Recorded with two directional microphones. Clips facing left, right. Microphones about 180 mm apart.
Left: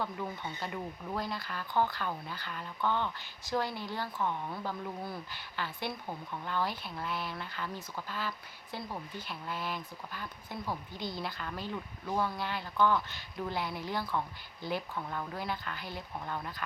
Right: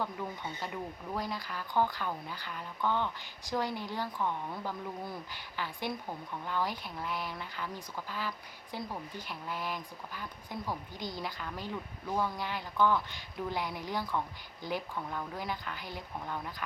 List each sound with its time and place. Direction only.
0.0 s speech: 10° right (ahead or behind)